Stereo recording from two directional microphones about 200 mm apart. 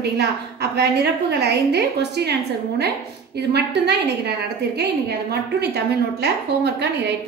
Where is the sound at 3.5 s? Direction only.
55° right (ahead or behind).